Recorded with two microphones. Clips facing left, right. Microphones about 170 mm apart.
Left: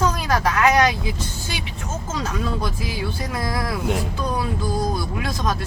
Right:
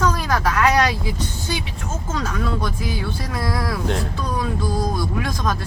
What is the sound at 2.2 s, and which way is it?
Speech, 20° left (ahead or behind).